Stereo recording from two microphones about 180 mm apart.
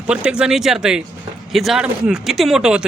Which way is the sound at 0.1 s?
5° right (ahead or behind).